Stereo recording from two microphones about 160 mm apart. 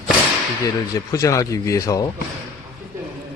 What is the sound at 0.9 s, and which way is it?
Speech, 20° left (ahead or behind).